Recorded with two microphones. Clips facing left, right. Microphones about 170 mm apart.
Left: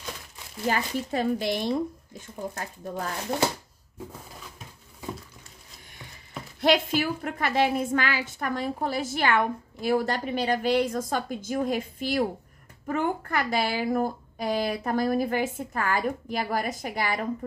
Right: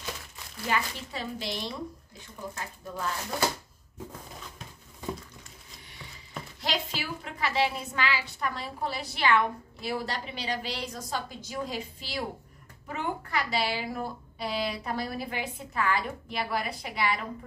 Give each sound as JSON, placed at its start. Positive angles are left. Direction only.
{"t": 0.7, "sound": "a woman's voice", "side_deg": 45}
{"t": 6.6, "sound": "a woman's voice", "side_deg": 50}